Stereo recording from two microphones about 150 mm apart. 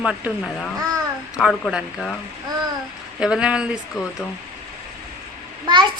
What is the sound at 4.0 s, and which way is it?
Speech, 25° left (ahead or behind).